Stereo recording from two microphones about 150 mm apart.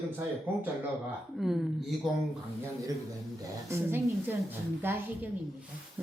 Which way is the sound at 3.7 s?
15° right (ahead or behind).